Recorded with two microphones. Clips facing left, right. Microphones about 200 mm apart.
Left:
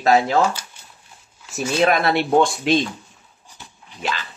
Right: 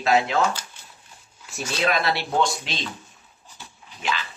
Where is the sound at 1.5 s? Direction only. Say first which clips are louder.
Left 6 dB; 45° left (ahead or behind).